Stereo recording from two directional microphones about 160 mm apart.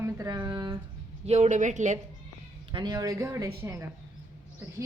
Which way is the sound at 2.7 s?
30° right (ahead or behind).